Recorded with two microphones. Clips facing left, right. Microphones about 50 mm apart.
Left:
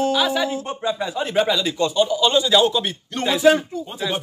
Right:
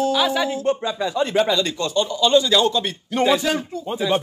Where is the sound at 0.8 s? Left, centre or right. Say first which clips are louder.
Right 1 dB; centre.